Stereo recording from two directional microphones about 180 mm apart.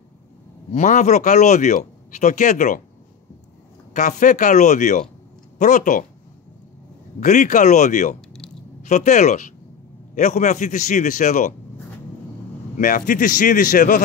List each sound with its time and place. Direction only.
0.7 s speech: 45° left (ahead or behind)
3.9 s speech: 45° left (ahead or behind)
7.2 s speech: 40° left (ahead or behind)
12.7 s speech: 45° left (ahead or behind)